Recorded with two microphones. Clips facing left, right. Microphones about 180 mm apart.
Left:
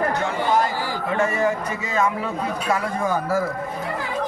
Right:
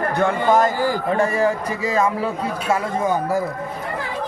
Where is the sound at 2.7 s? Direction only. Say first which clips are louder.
Right 3 dB; 20° right (ahead or behind).